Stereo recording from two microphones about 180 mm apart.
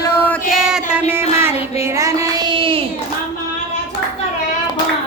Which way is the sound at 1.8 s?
15° right (ahead or behind).